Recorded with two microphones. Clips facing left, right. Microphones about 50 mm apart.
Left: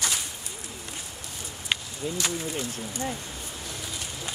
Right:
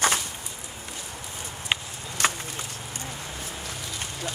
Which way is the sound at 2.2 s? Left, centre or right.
Right.